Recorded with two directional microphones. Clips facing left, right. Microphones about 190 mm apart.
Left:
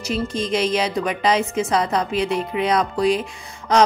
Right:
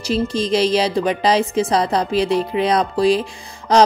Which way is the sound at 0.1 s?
35° right (ahead or behind).